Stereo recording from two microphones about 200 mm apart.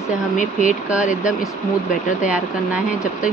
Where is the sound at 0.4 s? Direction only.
40° left (ahead or behind).